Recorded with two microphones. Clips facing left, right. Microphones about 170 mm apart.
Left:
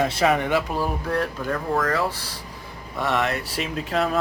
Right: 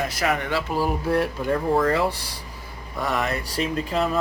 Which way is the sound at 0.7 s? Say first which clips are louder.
Right 2 dB; 10° right (ahead or behind).